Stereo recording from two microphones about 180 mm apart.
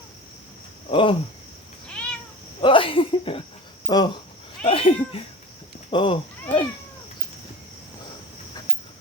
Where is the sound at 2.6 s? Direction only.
30° left (ahead or behind).